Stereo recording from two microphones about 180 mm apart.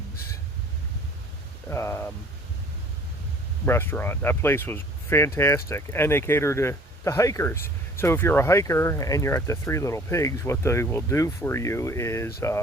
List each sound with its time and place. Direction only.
1.7 s speech: 15° left (ahead or behind)
3.7 s speech: 10° left (ahead or behind)